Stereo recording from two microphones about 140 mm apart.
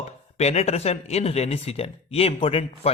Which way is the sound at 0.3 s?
50° left (ahead or behind).